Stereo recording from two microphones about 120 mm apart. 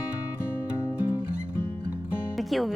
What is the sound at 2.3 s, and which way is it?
Music, centre (ahead or behind).